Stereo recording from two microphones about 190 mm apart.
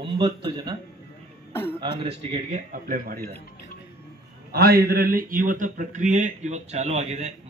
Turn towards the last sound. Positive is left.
turn(degrees=-35)  # may be behind; listen again after turning